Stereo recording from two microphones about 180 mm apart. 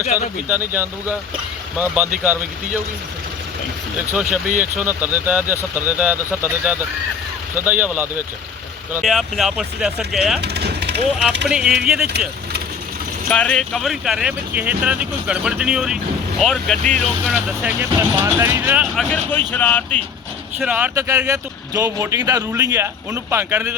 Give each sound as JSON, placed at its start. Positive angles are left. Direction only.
{"t": 0.4, "sound": "speech", "side_deg": -10}
{"t": 4.1, "sound": "speech", "side_deg": -5}
{"t": 9.0, "sound": "speech", "side_deg": 0}
{"t": 10.4, "sound": "vehicle", "side_deg": -65}
{"t": 11.4, "sound": "speech", "side_deg": -5}
{"t": 13.3, "sound": "speech", "side_deg": 5}
{"t": 17.2, "sound": "speech", "side_deg": -5}
{"t": 18.9, "sound": "speech", "side_deg": 10}
{"t": 20.6, "sound": "speech", "side_deg": -5}